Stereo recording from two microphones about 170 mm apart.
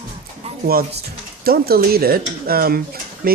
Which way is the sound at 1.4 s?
65° right (ahead or behind).